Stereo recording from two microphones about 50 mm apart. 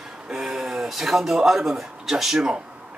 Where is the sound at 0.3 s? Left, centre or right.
Centre.